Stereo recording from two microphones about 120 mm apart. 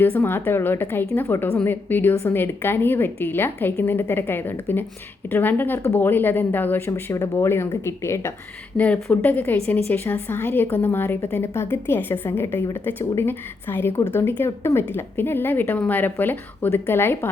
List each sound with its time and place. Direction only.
0.0 s a woman's voice: 15° left (ahead or behind)